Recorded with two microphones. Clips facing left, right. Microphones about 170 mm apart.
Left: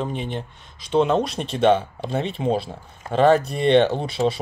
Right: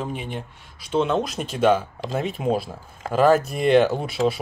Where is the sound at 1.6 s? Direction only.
30° left (ahead or behind).